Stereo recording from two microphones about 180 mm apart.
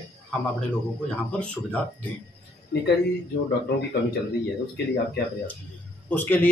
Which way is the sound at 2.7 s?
65° left (ahead or behind).